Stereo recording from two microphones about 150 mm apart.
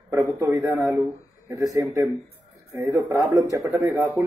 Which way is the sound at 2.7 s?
20° right (ahead or behind).